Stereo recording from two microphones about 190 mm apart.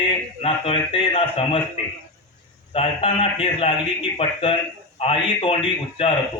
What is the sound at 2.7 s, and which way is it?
A man's voice, 30° left (ahead or behind).